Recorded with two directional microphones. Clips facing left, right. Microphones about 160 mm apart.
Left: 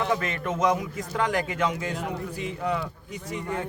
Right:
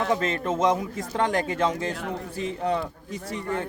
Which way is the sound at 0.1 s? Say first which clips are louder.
Right 3 dB; 30° right (ahead or behind).